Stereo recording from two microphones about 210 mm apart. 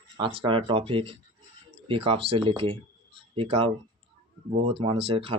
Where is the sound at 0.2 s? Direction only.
25° right (ahead or behind).